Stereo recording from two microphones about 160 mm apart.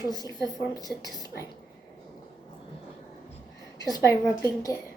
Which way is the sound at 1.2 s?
20° left (ahead or behind).